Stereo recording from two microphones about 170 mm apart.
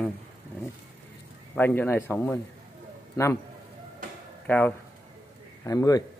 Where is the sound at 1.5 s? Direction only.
10° left (ahead or behind).